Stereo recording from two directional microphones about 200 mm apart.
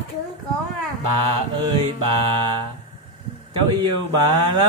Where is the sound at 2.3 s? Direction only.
25° right (ahead or behind).